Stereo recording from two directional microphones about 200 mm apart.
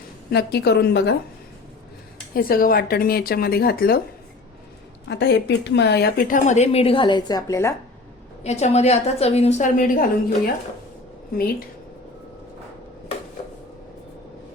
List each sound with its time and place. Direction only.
0.3 s speech: 55° left (ahead or behind)
2.3 s speech: 45° left (ahead or behind)
5.0 s a woman's voice: 60° left (ahead or behind); by 7.8 s 15° left (ahead or behind)
8.4 s a woman's voice: 35° left (ahead or behind)